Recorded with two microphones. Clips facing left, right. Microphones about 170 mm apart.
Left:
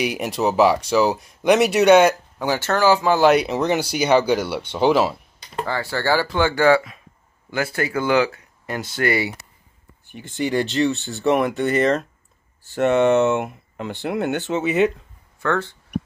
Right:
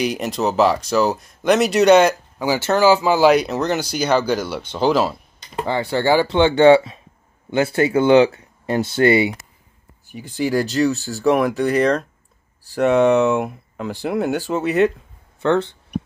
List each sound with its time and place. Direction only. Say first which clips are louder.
0.0 s speech: right 1 dB; 10° left (ahead or behind)
2.4 s speech: right 3 dB; 10° right (ahead or behind)
3.3 s speech: even; 5° left (ahead or behind)
5.7 s speech: right 4 dB; 20° right (ahead or behind)
10.1 s speech: right 2 dB; centre (ahead or behind)
15.4 s speech: right 5 dB; 20° right (ahead or behind)